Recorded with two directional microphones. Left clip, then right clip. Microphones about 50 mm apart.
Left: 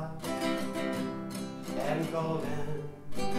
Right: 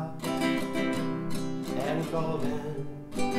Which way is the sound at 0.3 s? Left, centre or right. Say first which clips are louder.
Right 3 dB; right.